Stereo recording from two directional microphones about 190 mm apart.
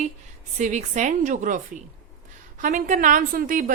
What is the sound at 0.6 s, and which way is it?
A woman's voice, 40° right (ahead or behind).